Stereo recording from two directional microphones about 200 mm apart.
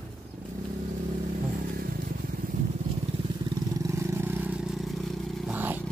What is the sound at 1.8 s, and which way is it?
Vehicle, 50° right (ahead or behind).